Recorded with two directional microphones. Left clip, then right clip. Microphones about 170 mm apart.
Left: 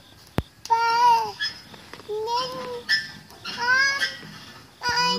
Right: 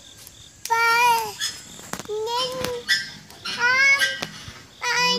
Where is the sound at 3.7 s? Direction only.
25° left (ahead or behind).